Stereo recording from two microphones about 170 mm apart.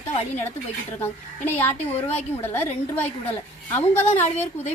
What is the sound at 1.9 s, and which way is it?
Speech, 40° left (ahead or behind).